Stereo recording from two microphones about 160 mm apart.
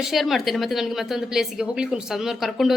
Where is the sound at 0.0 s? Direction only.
Centre (ahead or behind).